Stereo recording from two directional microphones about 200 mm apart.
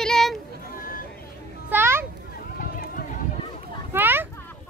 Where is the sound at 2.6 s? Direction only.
45° left (ahead or behind).